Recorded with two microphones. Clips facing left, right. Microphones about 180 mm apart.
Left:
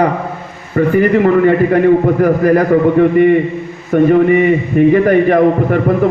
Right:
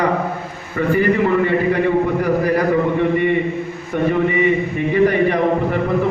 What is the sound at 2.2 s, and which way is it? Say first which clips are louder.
A man's voice: left 6 dB; 50° left (ahead or behind).